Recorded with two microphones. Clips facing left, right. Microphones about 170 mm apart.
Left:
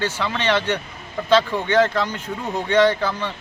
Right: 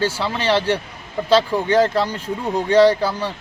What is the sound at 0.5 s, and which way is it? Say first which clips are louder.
Speech: right 3 dB; 30° right (ahead or behind).